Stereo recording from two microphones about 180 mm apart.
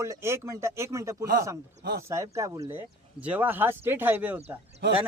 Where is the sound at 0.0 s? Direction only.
15° right (ahead or behind).